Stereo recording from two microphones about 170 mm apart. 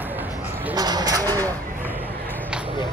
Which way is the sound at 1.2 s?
10° left (ahead or behind).